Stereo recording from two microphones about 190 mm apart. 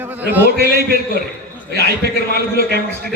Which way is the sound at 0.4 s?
55° right (ahead or behind).